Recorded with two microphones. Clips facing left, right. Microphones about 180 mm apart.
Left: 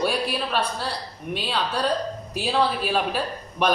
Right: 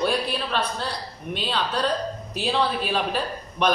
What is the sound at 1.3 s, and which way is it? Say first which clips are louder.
A man's voice: even; 5° left (ahead or behind).